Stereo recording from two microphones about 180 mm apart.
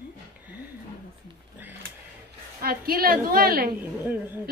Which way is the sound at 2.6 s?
55° right (ahead or behind).